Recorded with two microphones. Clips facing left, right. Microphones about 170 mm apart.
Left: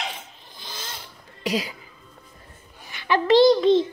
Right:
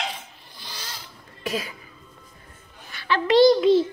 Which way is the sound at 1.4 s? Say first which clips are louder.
Left 3 dB; 15° left (ahead or behind).